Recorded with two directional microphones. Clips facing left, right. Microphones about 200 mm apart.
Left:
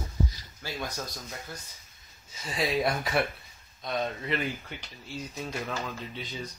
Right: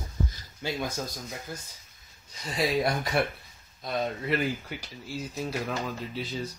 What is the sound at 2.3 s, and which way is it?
Speech, centre (ahead or behind).